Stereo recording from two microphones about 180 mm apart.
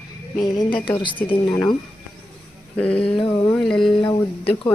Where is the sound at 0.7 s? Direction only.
25° left (ahead or behind).